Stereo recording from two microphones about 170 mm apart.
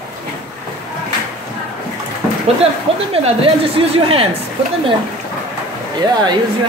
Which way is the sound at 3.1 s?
35° right (ahead or behind).